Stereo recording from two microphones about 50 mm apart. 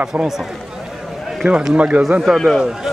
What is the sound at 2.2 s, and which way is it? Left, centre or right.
Speech, centre.